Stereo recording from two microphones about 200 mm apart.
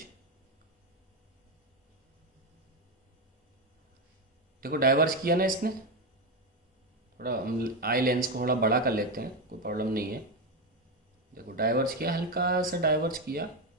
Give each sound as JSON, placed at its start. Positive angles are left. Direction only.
{"t": 4.6, "sound": "speech", "side_deg": -45}
{"t": 7.2, "sound": "speech", "side_deg": -50}
{"t": 11.3, "sound": "speech", "side_deg": -45}